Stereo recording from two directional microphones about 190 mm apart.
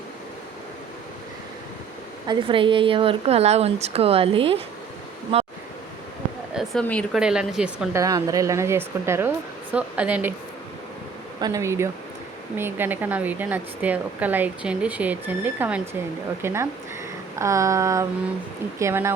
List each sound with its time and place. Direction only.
2.2 s a woman's voice: 25° right (ahead or behind)
6.5 s a sound: centre (ahead or behind)
6.8 s a woman's voice: 5° left (ahead or behind)
7.2 s speech: 5° right (ahead or behind)
7.9 s a woman's voice: 20° right (ahead or behind)
11.3 s a woman's voice: 20° right (ahead or behind)